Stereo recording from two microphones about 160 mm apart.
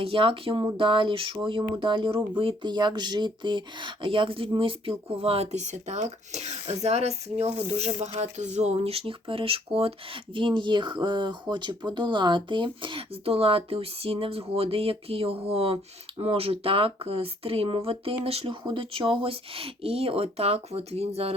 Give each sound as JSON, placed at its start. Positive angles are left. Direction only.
{"t": 0.0, "sound": "speech", "side_deg": -35}